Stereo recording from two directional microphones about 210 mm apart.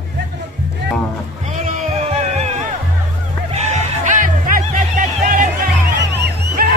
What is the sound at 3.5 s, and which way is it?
Music, 35° right (ahead or behind).